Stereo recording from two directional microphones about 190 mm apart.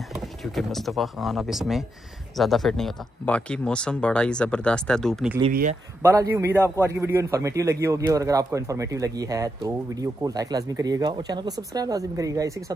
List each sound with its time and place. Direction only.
0.6 s speech: centre (ahead or behind)
5.5 s speech: 45° right (ahead or behind)
6.0 s speech: 15° right (ahead or behind)